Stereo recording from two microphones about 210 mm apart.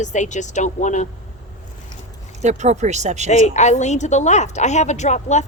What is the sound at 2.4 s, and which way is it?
Speech, 35° right (ahead or behind).